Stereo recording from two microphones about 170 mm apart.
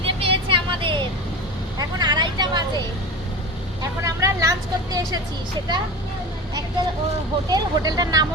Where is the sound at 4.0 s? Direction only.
20° right (ahead or behind).